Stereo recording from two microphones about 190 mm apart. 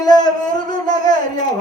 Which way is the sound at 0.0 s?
20° left (ahead or behind).